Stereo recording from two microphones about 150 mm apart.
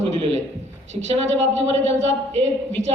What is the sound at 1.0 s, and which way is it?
Speech, 45° right (ahead or behind).